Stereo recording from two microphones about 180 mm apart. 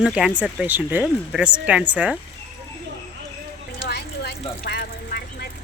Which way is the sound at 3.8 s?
65° left (ahead or behind).